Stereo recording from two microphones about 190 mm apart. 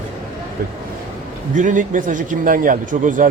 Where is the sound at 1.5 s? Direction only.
40° right (ahead or behind).